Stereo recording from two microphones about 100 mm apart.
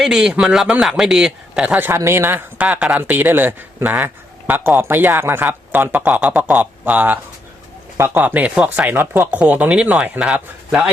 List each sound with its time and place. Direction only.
0.0 s a man's voice: 5° right (ahead or behind)
2.0 s a man's voice: 25° right (ahead or behind)
3.0 s a man's voice: 20° right (ahead or behind)